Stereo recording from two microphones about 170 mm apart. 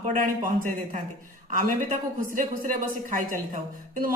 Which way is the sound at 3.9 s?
55° right (ahead or behind).